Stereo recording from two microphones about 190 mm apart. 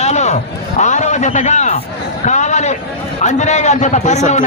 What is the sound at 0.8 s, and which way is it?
A man's voice, 40° left (ahead or behind).